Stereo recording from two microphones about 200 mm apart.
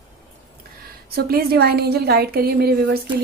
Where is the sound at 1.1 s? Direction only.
50° right (ahead or behind).